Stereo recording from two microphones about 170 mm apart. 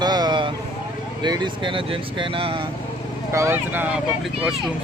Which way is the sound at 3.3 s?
15° right (ahead or behind).